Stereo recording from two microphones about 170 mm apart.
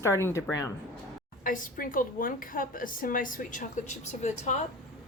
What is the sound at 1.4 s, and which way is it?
A woman's voice, 50° left (ahead or behind).